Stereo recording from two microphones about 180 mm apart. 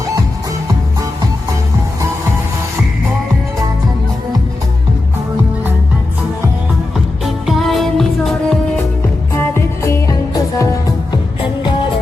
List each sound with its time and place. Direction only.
7.4 s music: centre (ahead or behind)
9.3 s music: 15° left (ahead or behind)